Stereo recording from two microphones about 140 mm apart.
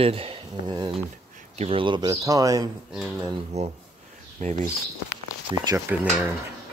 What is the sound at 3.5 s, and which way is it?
Speech, 50° right (ahead or behind).